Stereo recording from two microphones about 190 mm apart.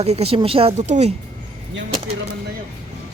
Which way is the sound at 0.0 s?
35° right (ahead or behind).